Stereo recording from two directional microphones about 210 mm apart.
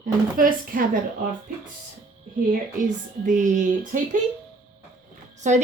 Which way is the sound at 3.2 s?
35° right (ahead or behind).